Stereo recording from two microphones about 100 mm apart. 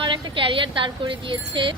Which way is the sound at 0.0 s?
55° right (ahead or behind).